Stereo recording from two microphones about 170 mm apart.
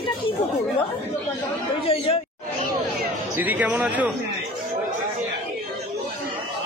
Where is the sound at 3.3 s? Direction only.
10° right (ahead or behind).